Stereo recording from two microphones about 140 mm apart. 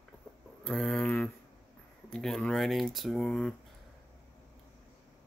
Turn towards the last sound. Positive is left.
turn(degrees=5)  # may be behind; listen again after turning